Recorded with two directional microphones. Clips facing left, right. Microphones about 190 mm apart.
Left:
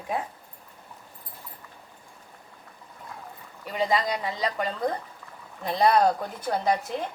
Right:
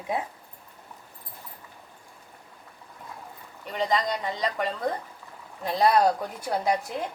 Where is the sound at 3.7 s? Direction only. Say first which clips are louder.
Left 1 dB; 5° left (ahead or behind).